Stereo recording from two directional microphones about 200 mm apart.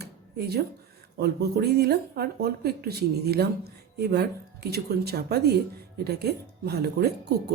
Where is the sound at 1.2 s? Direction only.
50° right (ahead or behind).